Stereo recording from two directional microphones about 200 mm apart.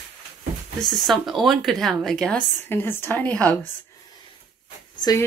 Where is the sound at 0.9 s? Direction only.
Centre (ahead or behind).